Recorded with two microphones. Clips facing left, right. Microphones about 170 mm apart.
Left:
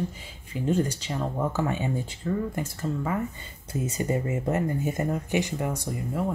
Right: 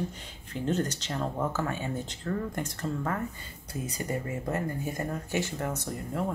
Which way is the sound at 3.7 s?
25° left (ahead or behind).